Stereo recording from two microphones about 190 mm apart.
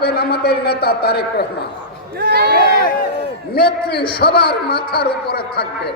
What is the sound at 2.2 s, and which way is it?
Speech, 55° right (ahead or behind).